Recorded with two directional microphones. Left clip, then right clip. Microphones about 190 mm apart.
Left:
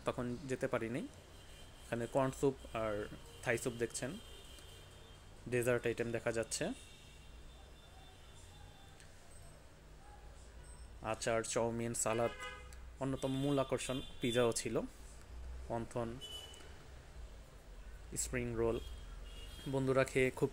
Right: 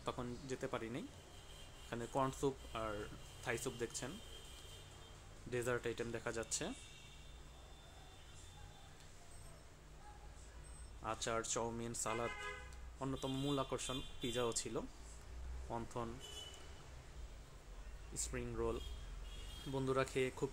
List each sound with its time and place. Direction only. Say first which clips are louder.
0.0 s speech: left 5 dB; 20° left (ahead or behind)
5.5 s speech: left 6 dB; 20° left (ahead or behind)
11.0 s speech: left 4 dB; 15° left (ahead or behind)
18.1 s speech: left 5 dB; 20° left (ahead or behind)